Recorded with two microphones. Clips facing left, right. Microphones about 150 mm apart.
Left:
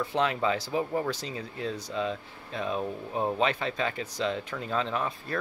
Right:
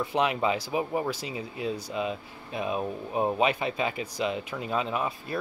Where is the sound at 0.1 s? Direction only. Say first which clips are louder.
Right 1 dB; 15° right (ahead or behind).